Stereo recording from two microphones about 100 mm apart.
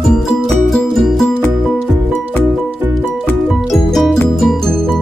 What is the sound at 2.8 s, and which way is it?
Music, 20° right (ahead or behind).